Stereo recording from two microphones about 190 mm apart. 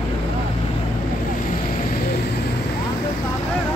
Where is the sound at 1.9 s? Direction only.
50° left (ahead or behind).